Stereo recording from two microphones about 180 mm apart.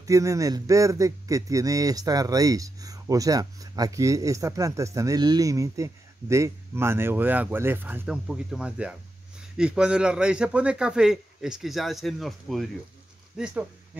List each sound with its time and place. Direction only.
0.0 s a man's voice: 20° right (ahead or behind)